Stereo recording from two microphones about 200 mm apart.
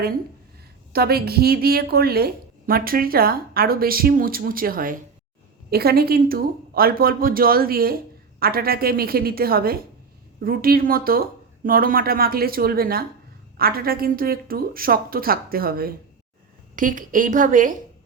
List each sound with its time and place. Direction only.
0.9 s a woman's voice: 50° right (ahead or behind)